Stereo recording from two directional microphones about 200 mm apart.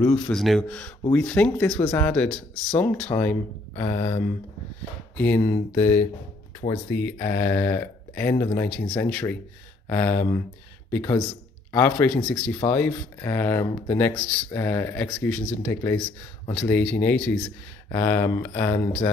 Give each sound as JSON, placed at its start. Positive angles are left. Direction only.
{"t": 0.0, "sound": "speech", "side_deg": 5}
{"t": 5.1, "sound": "speech", "side_deg": 10}
{"t": 6.6, "sound": "speech", "side_deg": 40}
{"t": 7.0, "sound": "speech", "side_deg": 5}